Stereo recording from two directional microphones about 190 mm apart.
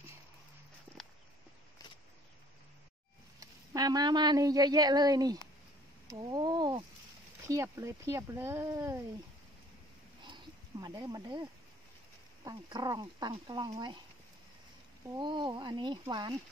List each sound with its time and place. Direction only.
3.3 s speech: 20° right (ahead or behind)
10.2 s a sound: 20° right (ahead or behind)
12.4 s speech: 20° right (ahead or behind)
15.0 s speech: 25° right (ahead or behind)